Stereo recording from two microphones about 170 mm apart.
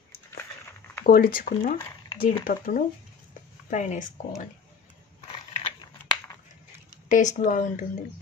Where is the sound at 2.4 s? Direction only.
55° left (ahead or behind).